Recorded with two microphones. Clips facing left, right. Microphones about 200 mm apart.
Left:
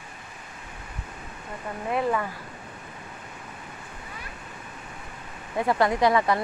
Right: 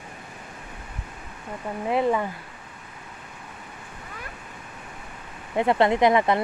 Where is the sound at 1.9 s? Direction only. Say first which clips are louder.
Right 3 dB; 20° right (ahead or behind).